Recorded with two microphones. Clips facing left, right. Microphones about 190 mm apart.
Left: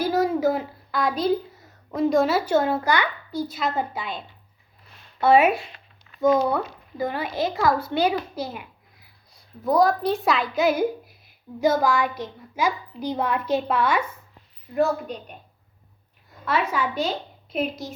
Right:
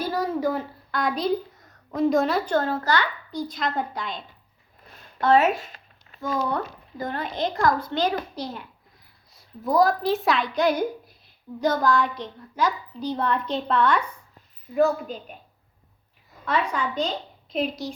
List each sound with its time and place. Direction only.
0.0 s a sound: 10° left (ahead or behind)
0.5 s a woman's voice: 5° left (ahead or behind)
5.2 s a woman's voice: 10° left (ahead or behind)
5.6 s a sound: 40° right (ahead or behind)
6.5 s a woman's voice: 10° left (ahead or behind)
16.5 s a woman's voice: 5° left (ahead or behind)